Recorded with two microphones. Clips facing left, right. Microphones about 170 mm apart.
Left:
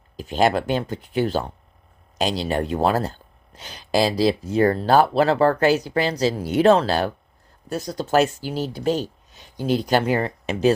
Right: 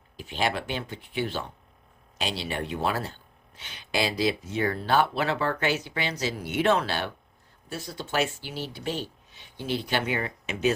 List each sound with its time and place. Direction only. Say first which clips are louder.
0.2 s speech: left 9 dB; 40° left (ahead or behind)